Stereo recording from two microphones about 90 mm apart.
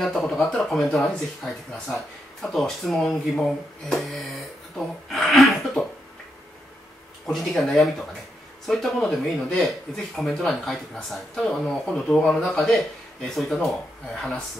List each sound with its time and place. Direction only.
0.0 s speech: 5° left (ahead or behind)
7.2 s speech: centre (ahead or behind)